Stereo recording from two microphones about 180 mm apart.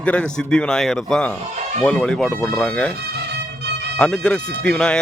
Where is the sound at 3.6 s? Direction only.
65° right (ahead or behind).